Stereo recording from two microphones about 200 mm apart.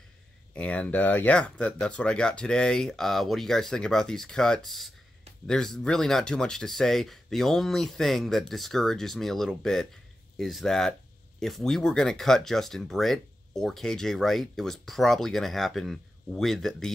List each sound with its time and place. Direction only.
0.6 s speech: 5° left (ahead or behind)